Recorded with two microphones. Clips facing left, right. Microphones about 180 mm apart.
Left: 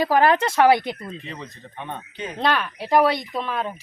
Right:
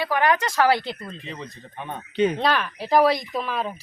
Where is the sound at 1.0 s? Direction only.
5° left (ahead or behind).